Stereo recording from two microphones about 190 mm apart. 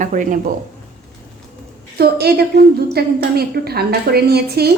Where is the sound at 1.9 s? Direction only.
55° right (ahead or behind).